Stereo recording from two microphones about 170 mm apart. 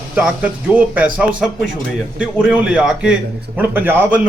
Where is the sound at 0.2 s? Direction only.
10° right (ahead or behind).